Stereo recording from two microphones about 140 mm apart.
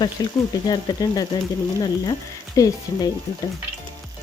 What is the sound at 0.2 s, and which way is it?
Speech, 30° left (ahead or behind).